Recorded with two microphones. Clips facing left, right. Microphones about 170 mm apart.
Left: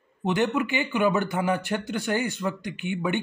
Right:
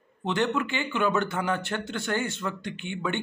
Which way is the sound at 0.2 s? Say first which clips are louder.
Left 2 dB; 15° left (ahead or behind).